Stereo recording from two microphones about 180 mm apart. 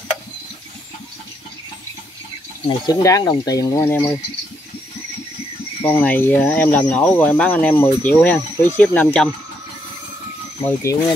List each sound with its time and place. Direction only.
2.6 s speech: 20° left (ahead or behind)
5.9 s speech: 10° left (ahead or behind)
10.8 s speech: 15° left (ahead or behind)